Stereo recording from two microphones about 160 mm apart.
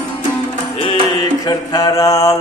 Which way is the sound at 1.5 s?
25° left (ahead or behind).